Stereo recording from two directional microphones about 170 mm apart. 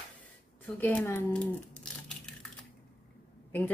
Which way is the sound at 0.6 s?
10° left (ahead or behind).